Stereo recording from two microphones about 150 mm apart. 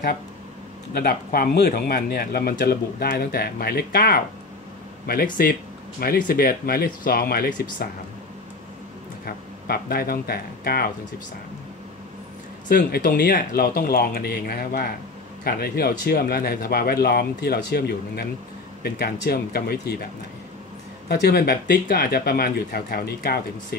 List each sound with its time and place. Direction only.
0.9 s speech: 85° left
5.0 s speech: 80° left
9.2 s speech: 90° left
12.6 s speech: 80° left
21.1 s speech: 90° left